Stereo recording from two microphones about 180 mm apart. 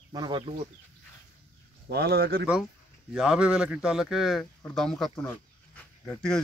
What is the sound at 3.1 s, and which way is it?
A man's voice, 5° right (ahead or behind).